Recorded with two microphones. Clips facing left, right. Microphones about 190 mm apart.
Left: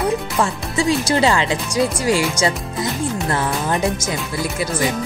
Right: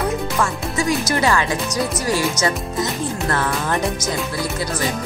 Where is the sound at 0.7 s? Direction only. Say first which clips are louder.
Left 3 dB; 30° left (ahead or behind).